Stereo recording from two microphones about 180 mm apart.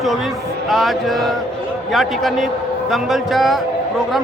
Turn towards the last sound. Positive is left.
turn(degrees=0)  # may be behind; listen again after turning